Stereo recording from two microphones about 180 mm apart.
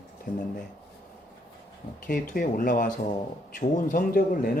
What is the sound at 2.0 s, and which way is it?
Speech, 50° left (ahead or behind).